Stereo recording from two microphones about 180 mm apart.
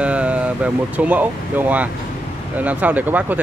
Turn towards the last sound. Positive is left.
turn(degrees=-10)  # may be behind; listen again after turning